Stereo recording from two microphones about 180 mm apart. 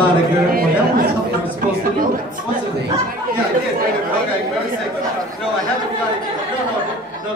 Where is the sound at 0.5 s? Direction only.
55° right (ahead or behind).